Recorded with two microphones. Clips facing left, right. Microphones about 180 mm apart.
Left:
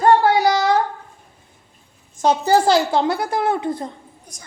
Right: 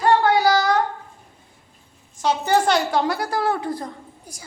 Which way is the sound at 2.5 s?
30° left (ahead or behind).